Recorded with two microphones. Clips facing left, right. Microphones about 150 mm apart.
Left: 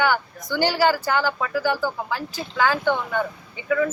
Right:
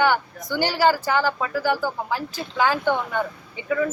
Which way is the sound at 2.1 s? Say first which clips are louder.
Right 1 dB; 5° right (ahead or behind).